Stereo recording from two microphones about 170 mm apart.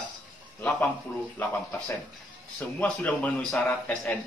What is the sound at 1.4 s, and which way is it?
Speech, 15° left (ahead or behind).